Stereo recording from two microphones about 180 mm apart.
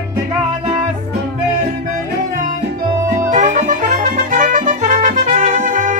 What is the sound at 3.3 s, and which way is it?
Music, 40° right (ahead or behind).